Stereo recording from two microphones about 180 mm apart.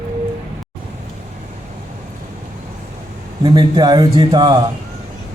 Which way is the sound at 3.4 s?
25° right (ahead or behind).